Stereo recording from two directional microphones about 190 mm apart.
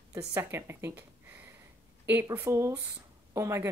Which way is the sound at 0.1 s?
15° right (ahead or behind).